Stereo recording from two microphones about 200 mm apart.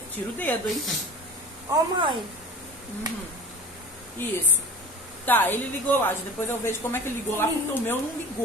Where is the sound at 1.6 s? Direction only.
20° right (ahead or behind).